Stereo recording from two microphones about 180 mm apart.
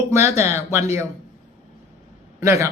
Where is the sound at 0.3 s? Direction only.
15° right (ahead or behind).